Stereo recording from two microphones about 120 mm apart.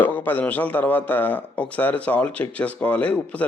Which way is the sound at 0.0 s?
15° left (ahead or behind).